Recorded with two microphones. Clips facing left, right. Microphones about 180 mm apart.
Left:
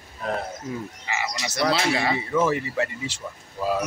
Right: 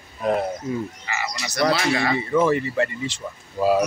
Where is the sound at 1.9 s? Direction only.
10° left (ahead or behind).